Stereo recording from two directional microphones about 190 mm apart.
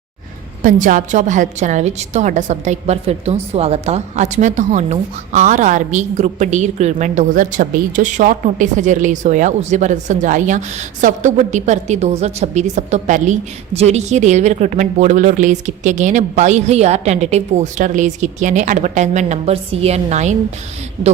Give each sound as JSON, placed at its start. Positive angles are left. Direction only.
{"t": 0.6, "sound": "a woman's voice", "side_deg": -45}